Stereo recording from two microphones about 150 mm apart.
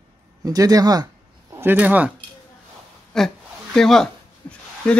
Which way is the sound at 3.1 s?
5° left (ahead or behind).